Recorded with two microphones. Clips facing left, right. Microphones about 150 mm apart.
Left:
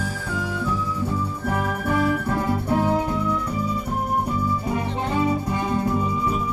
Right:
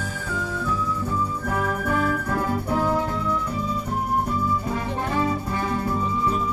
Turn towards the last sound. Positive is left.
turn(degrees=20)  # may be behind; listen again after turning